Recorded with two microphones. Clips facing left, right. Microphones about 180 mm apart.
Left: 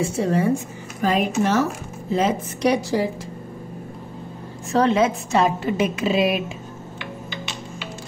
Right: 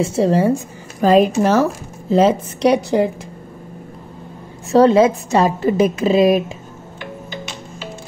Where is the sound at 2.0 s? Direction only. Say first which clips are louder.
Right 7 dB; 35° right (ahead or behind).